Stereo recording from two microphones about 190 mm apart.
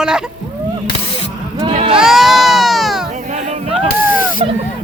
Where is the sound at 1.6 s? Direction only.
30° right (ahead or behind).